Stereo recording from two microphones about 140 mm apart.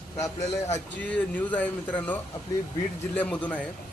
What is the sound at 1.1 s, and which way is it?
Speech, 10° left (ahead or behind).